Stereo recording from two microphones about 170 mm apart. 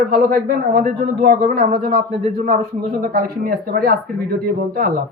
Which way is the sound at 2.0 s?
35° right (ahead or behind).